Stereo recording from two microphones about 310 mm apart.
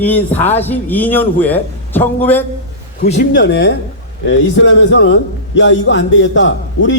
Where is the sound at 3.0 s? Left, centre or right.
Left.